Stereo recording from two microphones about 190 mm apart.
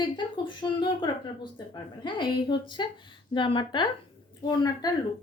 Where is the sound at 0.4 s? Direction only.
25° left (ahead or behind).